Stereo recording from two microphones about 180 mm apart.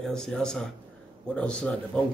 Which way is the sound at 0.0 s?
5° left (ahead or behind).